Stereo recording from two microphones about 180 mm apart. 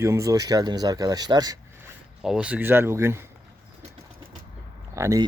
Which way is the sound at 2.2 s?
5° right (ahead or behind).